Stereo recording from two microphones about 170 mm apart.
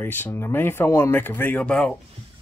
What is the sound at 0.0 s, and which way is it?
Speech, 15° left (ahead or behind).